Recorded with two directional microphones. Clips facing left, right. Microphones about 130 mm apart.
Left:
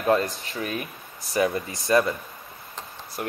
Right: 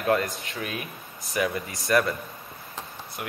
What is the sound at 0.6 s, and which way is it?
Speech, 40° left (ahead or behind).